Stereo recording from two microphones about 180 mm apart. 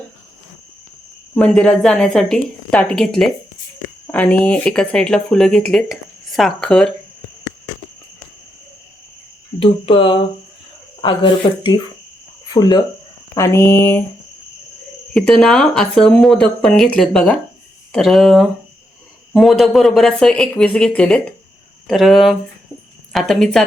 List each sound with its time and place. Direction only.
1.4 s speech: 5° left (ahead or behind)
9.6 s speech: 30° left (ahead or behind); by 14.0 s 15° left (ahead or behind)
15.1 s speech: centre (ahead or behind)